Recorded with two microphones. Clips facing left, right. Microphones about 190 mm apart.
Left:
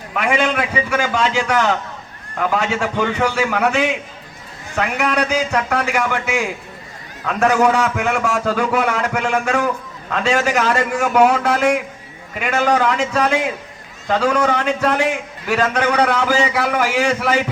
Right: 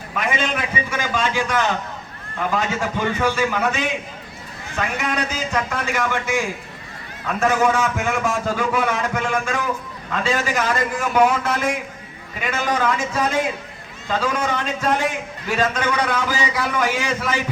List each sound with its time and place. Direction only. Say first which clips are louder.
0.2 s a man's voice: left 5 dB; 70° left (ahead or behind)
7.3 s a man's voice: left 3 dB; 70° left (ahead or behind)